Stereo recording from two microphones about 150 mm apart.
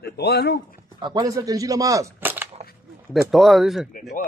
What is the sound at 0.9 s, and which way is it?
Speech, 25° right (ahead or behind).